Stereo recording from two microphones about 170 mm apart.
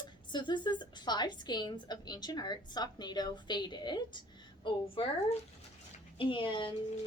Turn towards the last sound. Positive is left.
turn(degrees=30)  # may be behind; listen again after turning